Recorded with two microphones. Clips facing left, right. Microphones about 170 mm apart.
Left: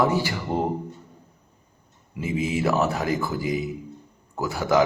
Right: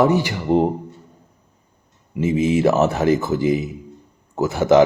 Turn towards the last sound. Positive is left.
turn(degrees=-20)  # may be behind; listen again after turning